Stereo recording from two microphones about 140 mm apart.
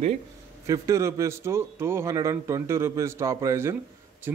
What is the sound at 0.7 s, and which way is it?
A man's voice, 20° right (ahead or behind).